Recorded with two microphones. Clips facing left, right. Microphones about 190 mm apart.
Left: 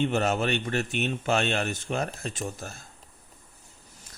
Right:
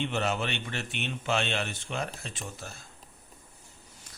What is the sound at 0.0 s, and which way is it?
Speech, 45° left (ahead or behind).